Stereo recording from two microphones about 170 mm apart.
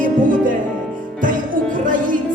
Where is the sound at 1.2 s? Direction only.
50° right (ahead or behind).